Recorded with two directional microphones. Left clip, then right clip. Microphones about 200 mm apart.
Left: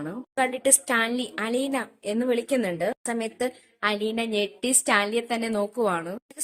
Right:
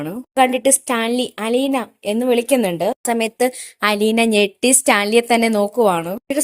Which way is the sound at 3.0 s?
35° right (ahead or behind).